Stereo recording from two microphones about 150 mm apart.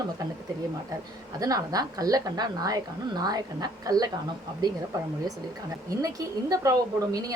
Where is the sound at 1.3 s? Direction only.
25° right (ahead or behind).